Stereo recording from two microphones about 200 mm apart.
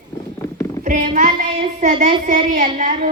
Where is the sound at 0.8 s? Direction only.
40° right (ahead or behind).